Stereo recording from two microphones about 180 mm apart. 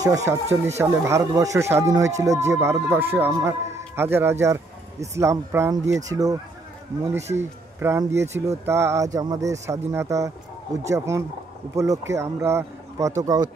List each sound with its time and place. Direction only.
0.0 s speech: 20° right (ahead or behind)
7.3 s speech: 15° right (ahead or behind)